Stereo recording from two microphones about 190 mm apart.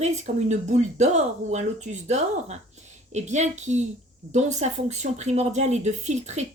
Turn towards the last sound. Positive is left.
turn(degrees=-35)  # may be behind; listen again after turning